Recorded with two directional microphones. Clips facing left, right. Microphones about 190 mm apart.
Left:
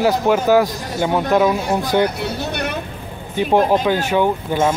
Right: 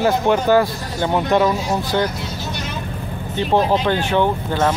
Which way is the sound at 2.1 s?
65° left (ahead or behind).